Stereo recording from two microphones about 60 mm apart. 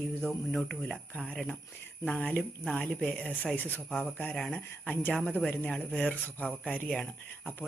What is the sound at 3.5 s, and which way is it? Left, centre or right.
Speech, left.